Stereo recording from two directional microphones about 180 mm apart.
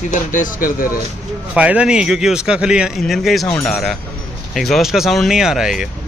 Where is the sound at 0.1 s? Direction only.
45° left (ahead or behind).